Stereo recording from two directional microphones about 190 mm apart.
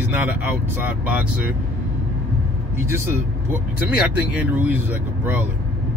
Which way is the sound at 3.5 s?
10° right (ahead or behind).